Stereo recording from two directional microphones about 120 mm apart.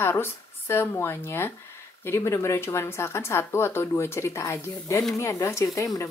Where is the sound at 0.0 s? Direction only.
20° left (ahead or behind).